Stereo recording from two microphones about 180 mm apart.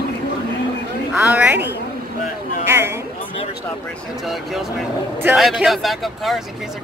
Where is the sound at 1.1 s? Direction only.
10° right (ahead or behind).